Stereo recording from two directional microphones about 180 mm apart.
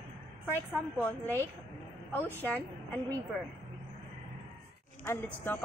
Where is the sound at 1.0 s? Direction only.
10° left (ahead or behind).